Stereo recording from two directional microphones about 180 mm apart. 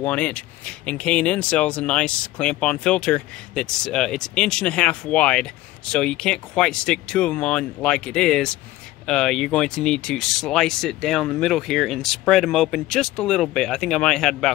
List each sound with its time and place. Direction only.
0.0 s speech: 5° left (ahead or behind)